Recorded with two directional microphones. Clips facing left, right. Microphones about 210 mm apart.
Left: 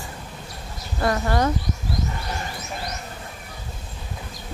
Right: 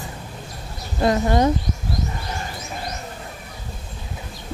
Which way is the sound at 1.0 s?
20° right (ahead or behind).